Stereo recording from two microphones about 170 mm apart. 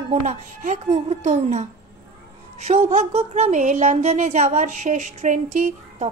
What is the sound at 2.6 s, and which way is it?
Speech, 45° right (ahead or behind).